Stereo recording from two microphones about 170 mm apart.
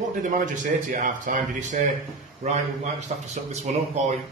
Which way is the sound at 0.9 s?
50° right (ahead or behind).